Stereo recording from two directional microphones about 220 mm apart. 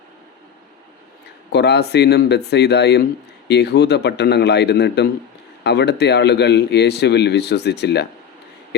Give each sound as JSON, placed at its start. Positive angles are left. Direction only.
{"t": 1.5, "sound": "speech", "side_deg": 50}